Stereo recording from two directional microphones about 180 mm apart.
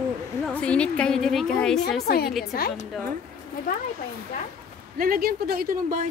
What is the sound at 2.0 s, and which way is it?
Speech, 60° left (ahead or behind).